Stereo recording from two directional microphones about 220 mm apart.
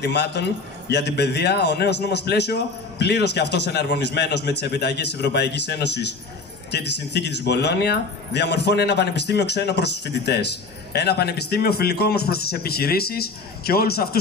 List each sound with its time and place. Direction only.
0.0 s speech: 50° left (ahead or behind)